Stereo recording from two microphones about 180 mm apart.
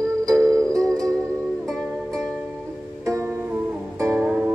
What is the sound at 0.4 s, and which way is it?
Music, 20° right (ahead or behind).